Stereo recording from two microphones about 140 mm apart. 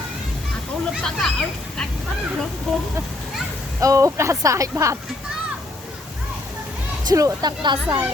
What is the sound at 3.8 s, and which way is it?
Speech, 20° right (ahead or behind).